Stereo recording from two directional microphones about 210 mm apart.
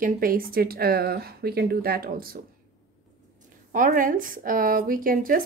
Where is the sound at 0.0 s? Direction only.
45° right (ahead or behind).